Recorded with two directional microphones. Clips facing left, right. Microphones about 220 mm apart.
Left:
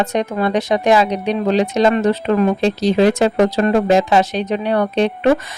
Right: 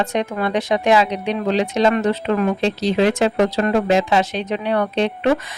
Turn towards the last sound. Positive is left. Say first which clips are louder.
# left 3 dB
turn(degrees=40)  # may be behind; listen again after turning